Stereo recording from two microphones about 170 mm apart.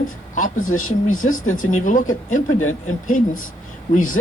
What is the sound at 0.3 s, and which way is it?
Speech, 50° left (ahead or behind).